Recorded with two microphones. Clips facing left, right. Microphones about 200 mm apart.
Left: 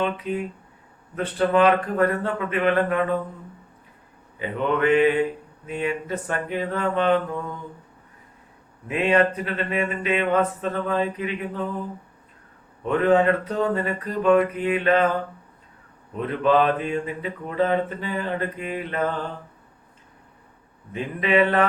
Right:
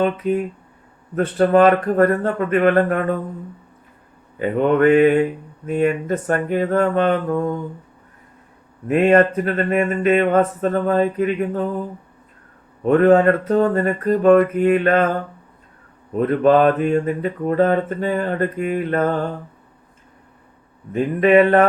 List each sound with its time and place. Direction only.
0.0 s mantra: 45° right (ahead or behind)
4.4 s mantra: 45° right (ahead or behind)
8.9 s mantra: 50° right (ahead or behind)
12.8 s mantra: 45° right (ahead or behind)
16.1 s mantra: 45° right (ahead or behind)
20.9 s mantra: 45° right (ahead or behind)